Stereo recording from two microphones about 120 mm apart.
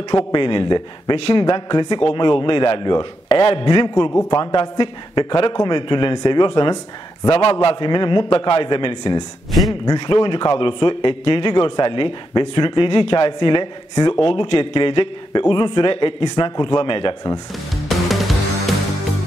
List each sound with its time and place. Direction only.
0.1 s a man's voice: 40° left (ahead or behind)
3.6 s a man's voice: 35° left (ahead or behind)
4.1 s a man's voice: 20° left (ahead or behind)
4.4 s a man's voice: 40° left (ahead or behind)
7.2 s a man's voice: 55° left (ahead or behind)
7.6 s a man's voice: 45° left (ahead or behind)
17.8 s music: centre (ahead or behind)